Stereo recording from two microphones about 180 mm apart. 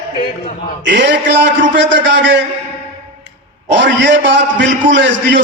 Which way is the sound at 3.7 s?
75° right (ahead or behind).